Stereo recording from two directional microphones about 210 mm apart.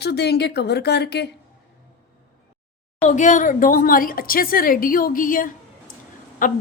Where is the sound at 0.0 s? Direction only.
50° left (ahead or behind).